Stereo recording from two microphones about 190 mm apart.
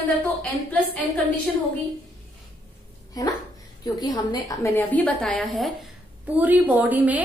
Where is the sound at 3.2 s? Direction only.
20° left (ahead or behind); by 5.7 s centre (ahead or behind).